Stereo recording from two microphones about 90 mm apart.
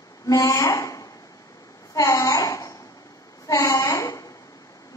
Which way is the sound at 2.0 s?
35° left (ahead or behind).